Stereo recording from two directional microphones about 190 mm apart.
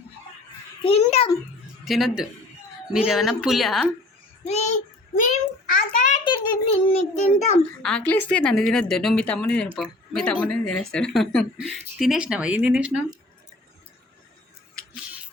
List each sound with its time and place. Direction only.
0.9 s a child's voice: 30° left (ahead or behind)
1.8 s speech: centre (ahead or behind)
4.4 s a child's voice: 35° left (ahead or behind)
6.1 s a child's voice: 25° left (ahead or behind)
7.8 s speech: 5° left (ahead or behind)